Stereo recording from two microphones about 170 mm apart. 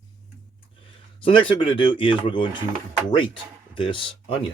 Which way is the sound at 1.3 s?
30° left (ahead or behind).